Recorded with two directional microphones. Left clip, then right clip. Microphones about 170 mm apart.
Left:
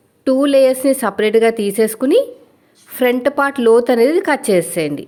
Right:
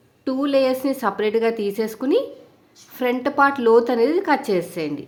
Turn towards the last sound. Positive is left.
turn(degrees=35)  # may be behind; listen again after turning